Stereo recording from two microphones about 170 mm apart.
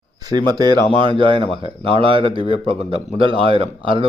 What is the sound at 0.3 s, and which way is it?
Speech, 20° right (ahead or behind).